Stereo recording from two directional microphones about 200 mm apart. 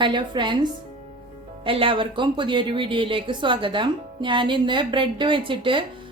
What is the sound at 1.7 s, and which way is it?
A woman's voice, 25° right (ahead or behind).